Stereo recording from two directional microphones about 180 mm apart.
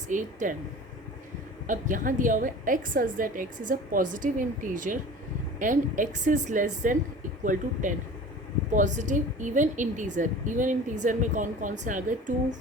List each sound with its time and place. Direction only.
0.1 s a woman's voice: 45° right (ahead or behind)
1.6 s a woman's voice: 45° right (ahead or behind)